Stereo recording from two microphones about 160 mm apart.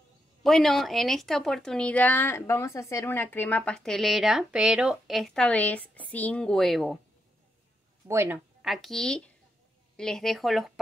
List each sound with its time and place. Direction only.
0.4 s a woman's voice: centre (ahead or behind)
8.1 s speech: 15° right (ahead or behind)
8.6 s a woman's voice: centre (ahead or behind)